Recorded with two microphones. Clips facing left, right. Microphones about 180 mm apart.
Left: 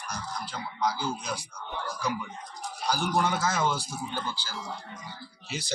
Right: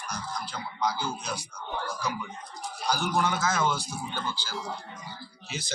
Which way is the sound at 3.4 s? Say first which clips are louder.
Even; 10° left (ahead or behind).